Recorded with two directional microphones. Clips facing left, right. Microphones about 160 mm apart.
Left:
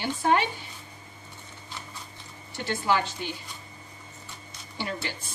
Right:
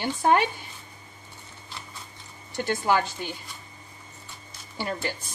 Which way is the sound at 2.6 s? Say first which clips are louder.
Right 2 dB; 50° right (ahead or behind).